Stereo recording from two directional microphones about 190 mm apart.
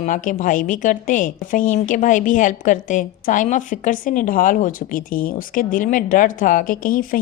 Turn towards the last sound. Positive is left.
turn(degrees=45)  # may be behind; listen again after turning